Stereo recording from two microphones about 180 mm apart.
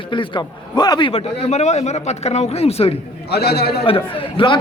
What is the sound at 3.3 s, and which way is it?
Speech, 60° left (ahead or behind).